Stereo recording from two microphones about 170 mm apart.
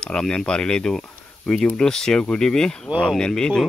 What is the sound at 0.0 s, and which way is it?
Speech, 5° left (ahead or behind).